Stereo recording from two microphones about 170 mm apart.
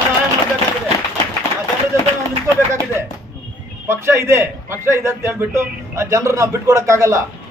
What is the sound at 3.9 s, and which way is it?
A man's voice, 15° right (ahead or behind).